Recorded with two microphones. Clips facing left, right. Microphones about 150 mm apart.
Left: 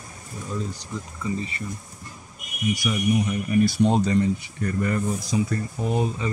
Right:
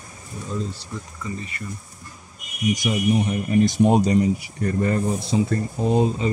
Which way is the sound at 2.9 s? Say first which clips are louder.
Right 1 dB; 30° right (ahead or behind).